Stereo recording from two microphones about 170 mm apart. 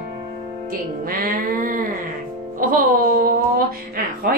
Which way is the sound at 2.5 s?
55° right (ahead or behind).